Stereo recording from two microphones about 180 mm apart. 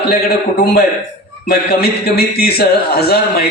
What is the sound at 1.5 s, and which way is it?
A man's voice, 60° left (ahead or behind).